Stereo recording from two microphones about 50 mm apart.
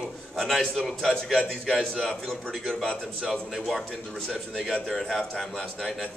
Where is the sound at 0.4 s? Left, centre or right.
Centre.